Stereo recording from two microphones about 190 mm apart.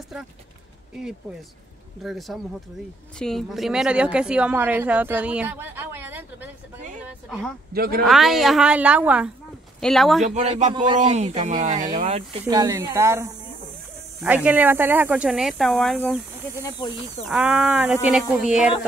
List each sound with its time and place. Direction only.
2.0 s a woman's voice: centre (ahead or behind)
7.7 s speech: 55° right (ahead or behind)
8.0 s a woman's voice: centre (ahead or behind)
10.2 s speech: 35° right (ahead or behind)
12.4 s a woman's voice: 20° right (ahead or behind); by 16.2 s centre (ahead or behind)
17.3 s a woman's voice: 5° right (ahead or behind)